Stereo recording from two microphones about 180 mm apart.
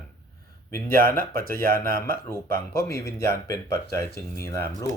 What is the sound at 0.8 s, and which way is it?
Speech, 50° right (ahead or behind).